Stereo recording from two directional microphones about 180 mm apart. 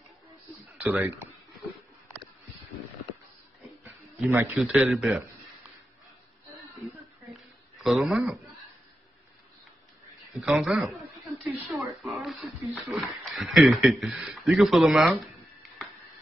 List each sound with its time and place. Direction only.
0.6 s a sound: 10° right (ahead or behind)
4.3 s a man's voice: 15° right (ahead or behind)
4.6 s speech: centre (ahead or behind)
6.8 s a sound: 15° right (ahead or behind)
7.8 s speech: centre (ahead or behind)
10.3 s a man's voice: centre (ahead or behind)